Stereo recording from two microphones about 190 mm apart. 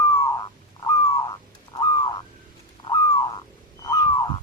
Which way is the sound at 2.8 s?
25° left (ahead or behind).